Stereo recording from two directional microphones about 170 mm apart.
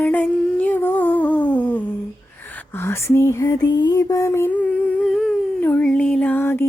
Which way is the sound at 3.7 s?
25° left (ahead or behind).